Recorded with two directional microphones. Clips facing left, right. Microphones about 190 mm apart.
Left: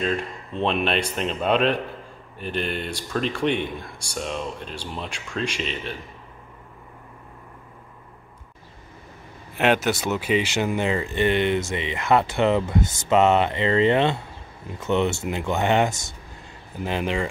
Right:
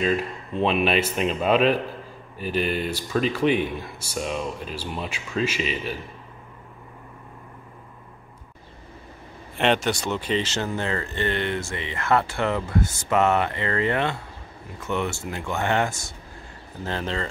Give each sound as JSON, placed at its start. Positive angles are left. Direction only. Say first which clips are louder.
{"t": 0.0, "sound": "speech", "louder": "right 2 dB", "side_deg": -5}
{"t": 9.6, "sound": "speech", "louder": "left 1 dB", "side_deg": 5}